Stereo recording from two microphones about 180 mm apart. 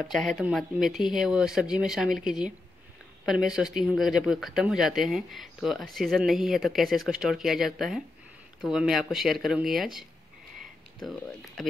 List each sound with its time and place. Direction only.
0.0 s speech: centre (ahead or behind)
11.1 s speech: centre (ahead or behind)